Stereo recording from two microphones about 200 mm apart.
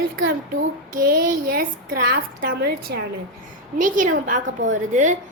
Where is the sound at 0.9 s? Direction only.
45° right (ahead or behind).